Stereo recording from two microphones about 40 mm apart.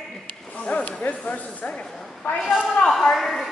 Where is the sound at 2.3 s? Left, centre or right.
Left.